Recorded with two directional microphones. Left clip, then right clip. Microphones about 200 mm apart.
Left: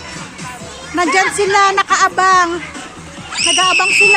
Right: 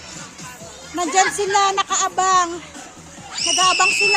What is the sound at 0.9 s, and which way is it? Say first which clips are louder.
Speech: left 5 dB; 15° right (ahead or behind).